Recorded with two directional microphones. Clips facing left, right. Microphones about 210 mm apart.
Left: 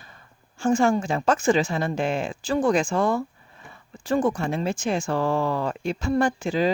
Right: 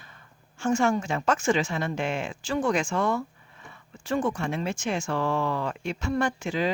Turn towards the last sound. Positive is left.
turn(degrees=35)  # may be behind; listen again after turning